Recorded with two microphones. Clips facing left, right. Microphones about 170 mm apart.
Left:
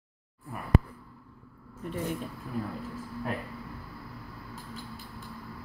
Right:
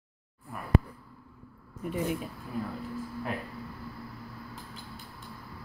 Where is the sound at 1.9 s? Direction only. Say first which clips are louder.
Right 2 dB; 10° right (ahead or behind).